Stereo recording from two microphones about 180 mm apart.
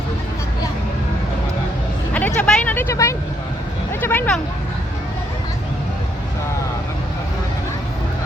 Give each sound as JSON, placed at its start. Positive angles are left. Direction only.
{"t": 2.1, "sound": "vehicle", "side_deg": 5}